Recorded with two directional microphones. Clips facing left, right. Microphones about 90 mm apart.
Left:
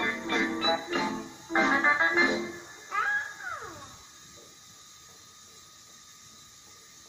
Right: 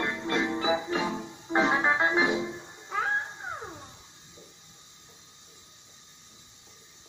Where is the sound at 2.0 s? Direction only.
20° right (ahead or behind).